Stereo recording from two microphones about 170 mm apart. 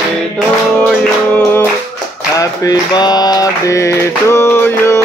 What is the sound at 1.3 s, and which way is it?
Mantra, 15° left (ahead or behind).